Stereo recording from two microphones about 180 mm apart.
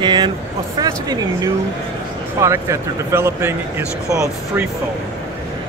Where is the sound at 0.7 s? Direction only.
20° right (ahead or behind).